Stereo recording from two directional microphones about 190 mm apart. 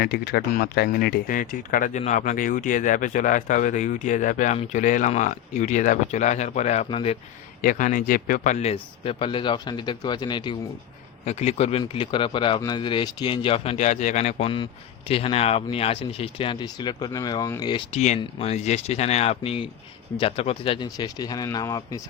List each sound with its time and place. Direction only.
0.0 s speech: 55° left (ahead or behind); by 7.2 s 30° left (ahead or behind)
7.6 s speech: 45° left (ahead or behind); by 10.6 s 25° left (ahead or behind)
11.3 s speech: 35° left (ahead or behind); by 22.0 s 15° left (ahead or behind)